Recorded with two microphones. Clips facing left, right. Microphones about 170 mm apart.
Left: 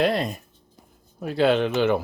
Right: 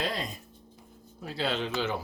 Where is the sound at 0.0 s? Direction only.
65° left (ahead or behind).